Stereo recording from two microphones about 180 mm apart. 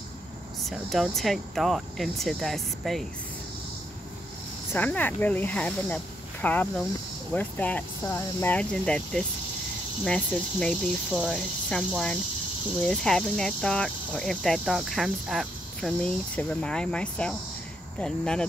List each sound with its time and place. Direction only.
0.7 s speech: centre (ahead or behind)
4.7 s speech: 10° left (ahead or behind)